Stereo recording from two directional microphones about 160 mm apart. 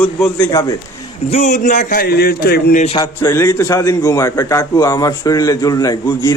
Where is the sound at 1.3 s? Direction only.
45° left (ahead or behind); by 2.7 s 75° left (ahead or behind).